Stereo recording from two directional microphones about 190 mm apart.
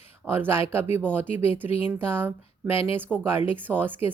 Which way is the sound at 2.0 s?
10° right (ahead or behind).